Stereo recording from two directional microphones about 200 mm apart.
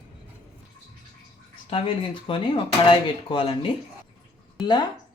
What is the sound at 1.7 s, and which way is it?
Speech, 30° left (ahead or behind).